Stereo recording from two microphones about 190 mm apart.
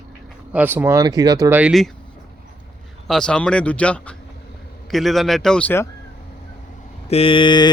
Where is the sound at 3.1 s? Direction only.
5° left (ahead or behind).